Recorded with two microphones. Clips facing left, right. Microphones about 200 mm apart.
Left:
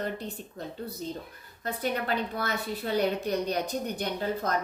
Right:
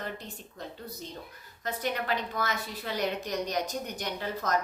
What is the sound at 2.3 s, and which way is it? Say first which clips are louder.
Speech: left 1 dB; 35° left (ahead or behind).